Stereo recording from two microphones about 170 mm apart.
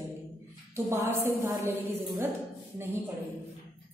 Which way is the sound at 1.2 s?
15° right (ahead or behind).